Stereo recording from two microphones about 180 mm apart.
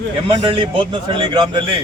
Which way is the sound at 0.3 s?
30° right (ahead or behind).